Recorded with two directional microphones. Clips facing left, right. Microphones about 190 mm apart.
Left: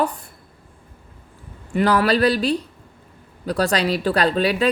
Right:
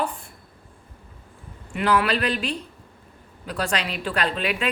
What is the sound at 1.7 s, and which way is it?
A woman's voice, 35° left (ahead or behind).